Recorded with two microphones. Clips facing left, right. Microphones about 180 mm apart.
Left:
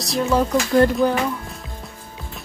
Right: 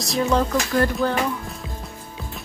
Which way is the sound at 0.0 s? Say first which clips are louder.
Left 1 dB; centre (ahead or behind).